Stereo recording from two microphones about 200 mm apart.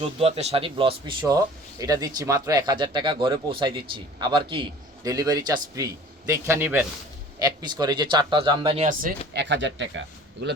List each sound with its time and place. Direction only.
0.0 s speech: 30° right (ahead or behind)
9.0 s speech: 50° right (ahead or behind)